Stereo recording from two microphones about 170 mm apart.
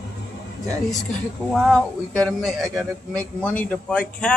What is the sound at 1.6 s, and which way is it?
A man's voice, 5° left (ahead or behind).